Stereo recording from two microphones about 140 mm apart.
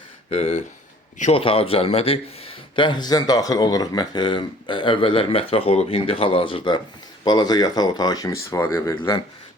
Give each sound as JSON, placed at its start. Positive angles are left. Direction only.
{"t": 0.3, "sound": "a man's voice", "side_deg": 45}